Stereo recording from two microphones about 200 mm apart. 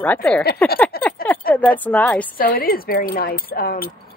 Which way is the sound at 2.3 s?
45° left (ahead or behind).